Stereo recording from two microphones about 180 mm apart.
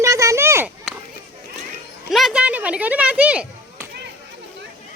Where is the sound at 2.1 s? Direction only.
Centre (ahead or behind).